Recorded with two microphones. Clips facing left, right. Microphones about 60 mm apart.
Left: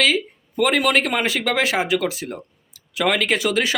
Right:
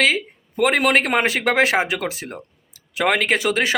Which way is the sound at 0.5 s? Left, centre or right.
Right.